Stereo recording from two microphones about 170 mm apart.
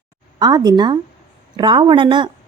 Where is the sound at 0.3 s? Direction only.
25° right (ahead or behind).